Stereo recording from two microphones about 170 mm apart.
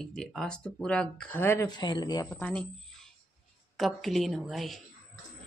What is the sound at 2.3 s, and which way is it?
Speech, 10° left (ahead or behind).